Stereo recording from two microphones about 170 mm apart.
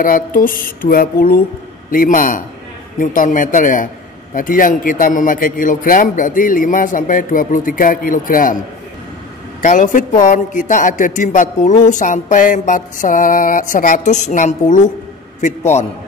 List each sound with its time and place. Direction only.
0.0 s mantra: 55° left (ahead or behind)
1.9 s a man's voice: 55° left (ahead or behind)
9.6 s a man's voice: 50° left (ahead or behind)